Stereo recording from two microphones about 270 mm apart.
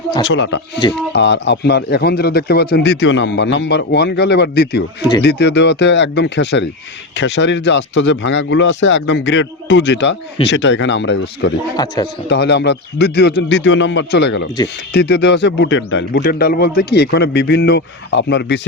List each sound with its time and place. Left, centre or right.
0.3 s a man's voice: left
11.8 s speech: centre
12.3 s a man's voice: left